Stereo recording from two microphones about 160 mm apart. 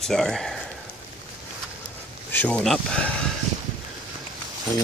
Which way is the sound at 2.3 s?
10° left (ahead or behind).